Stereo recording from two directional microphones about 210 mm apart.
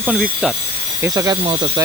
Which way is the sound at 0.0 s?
Centre (ahead or behind).